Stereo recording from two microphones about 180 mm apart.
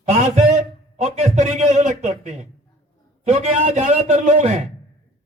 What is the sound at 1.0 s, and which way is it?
A man's voice, 40° right (ahead or behind).